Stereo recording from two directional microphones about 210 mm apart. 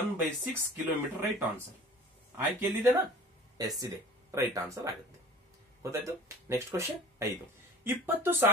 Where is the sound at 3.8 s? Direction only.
15° right (ahead or behind).